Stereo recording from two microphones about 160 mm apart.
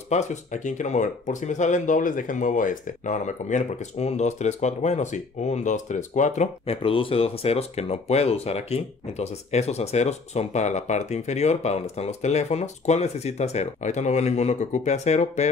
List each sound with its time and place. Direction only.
0.1 s speech: 50° left (ahead or behind)